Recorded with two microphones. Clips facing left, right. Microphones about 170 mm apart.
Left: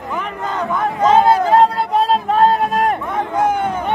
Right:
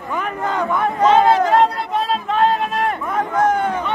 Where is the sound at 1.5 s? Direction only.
35° left (ahead or behind).